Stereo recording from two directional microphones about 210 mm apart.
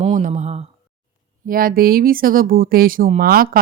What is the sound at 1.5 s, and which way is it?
Speech, 45° right (ahead or behind).